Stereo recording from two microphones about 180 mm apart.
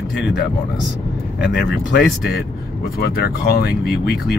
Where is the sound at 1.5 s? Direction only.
75° left (ahead or behind).